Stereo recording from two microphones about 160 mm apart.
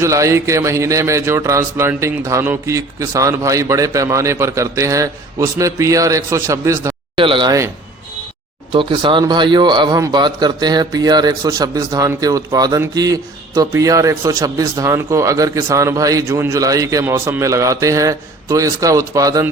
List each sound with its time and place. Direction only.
0.0 s a man's voice: 20° right (ahead or behind)
7.2 s a man's voice: 30° right (ahead or behind)
8.7 s a man's voice: 30° right (ahead or behind)